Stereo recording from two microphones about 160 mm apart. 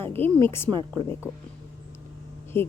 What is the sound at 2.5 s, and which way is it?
Speech, 15° left (ahead or behind).